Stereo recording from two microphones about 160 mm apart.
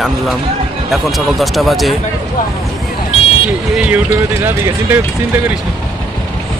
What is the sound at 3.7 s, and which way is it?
Speech, 10° right (ahead or behind).